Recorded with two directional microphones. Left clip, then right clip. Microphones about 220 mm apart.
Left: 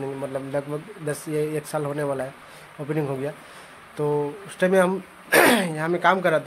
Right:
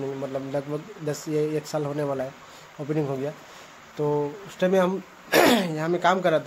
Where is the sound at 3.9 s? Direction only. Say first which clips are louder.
Left 1 dB; 10° left (ahead or behind).